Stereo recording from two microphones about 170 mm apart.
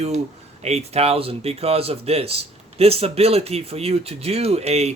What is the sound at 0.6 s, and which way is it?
Speech, 40° right (ahead or behind).